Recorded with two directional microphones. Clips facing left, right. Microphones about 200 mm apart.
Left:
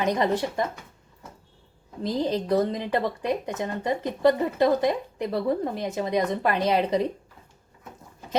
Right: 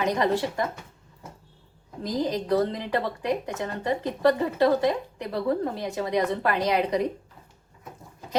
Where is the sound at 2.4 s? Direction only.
20° left (ahead or behind).